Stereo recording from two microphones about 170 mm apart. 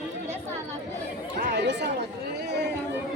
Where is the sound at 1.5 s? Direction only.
90° right.